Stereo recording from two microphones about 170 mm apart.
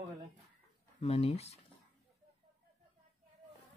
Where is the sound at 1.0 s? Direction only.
35° left (ahead or behind).